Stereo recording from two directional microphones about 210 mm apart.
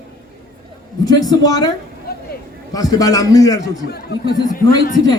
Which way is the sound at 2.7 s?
15° left (ahead or behind).